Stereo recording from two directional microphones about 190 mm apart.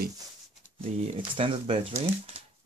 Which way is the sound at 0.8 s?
30° right (ahead or behind).